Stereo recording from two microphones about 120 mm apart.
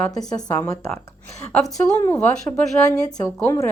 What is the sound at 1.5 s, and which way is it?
Speech, 5° left (ahead or behind).